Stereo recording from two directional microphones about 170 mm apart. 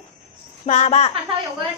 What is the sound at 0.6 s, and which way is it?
Speech, 40° left (ahead or behind).